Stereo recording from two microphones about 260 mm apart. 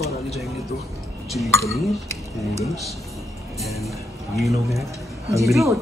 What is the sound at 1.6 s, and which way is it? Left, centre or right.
Speech, centre.